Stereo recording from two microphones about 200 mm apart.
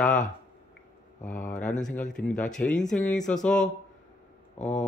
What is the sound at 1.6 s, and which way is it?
Speech, 5° left (ahead or behind).